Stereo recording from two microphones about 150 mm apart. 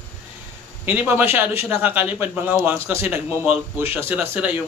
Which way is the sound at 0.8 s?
15° right (ahead or behind).